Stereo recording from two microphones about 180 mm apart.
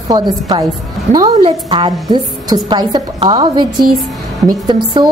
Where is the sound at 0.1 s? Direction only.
20° right (ahead or behind).